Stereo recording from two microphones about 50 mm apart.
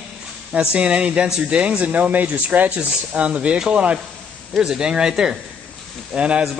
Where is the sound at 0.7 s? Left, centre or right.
Right.